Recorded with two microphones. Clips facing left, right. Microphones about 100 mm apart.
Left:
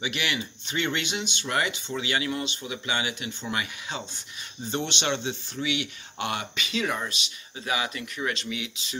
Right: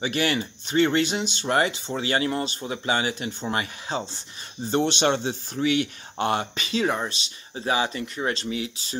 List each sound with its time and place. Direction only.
0.0 s speech: 40° right (ahead or behind)